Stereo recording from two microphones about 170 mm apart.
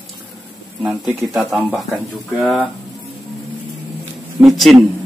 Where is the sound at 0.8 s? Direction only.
10° right (ahead or behind).